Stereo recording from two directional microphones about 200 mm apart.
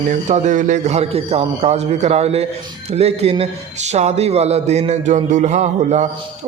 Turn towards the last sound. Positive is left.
turn(degrees=-35)  # may be behind; listen again after turning